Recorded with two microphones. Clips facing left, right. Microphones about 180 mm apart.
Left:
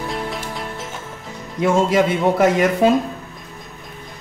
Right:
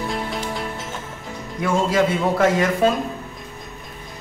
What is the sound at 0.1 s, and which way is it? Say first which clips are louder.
Music: even; centre (ahead or behind).